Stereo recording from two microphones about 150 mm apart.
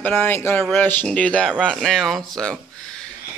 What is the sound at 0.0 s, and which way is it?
A woman's voice, 10° left (ahead or behind).